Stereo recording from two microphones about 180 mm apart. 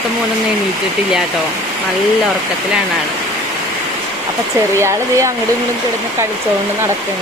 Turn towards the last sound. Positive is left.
turn(degrees=-15)  # may be behind; listen again after turning